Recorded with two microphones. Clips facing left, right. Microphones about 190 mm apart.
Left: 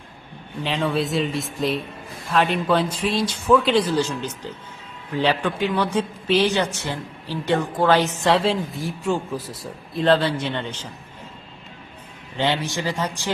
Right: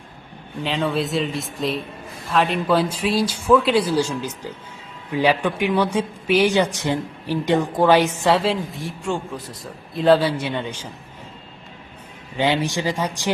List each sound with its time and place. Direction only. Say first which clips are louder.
0.6 s speech: even; centre (ahead or behind)
12.4 s speech: right 3 dB; 15° right (ahead or behind)